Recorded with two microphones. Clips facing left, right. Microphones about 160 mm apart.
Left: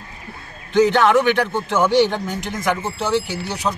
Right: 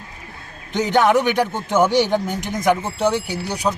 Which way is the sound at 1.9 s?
10° right (ahead or behind).